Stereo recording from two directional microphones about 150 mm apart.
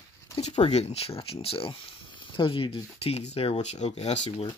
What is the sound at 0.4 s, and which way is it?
Speech, 45° left (ahead or behind).